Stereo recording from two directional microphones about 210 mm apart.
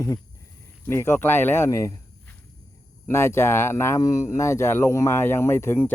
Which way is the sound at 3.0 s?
10° left (ahead or behind).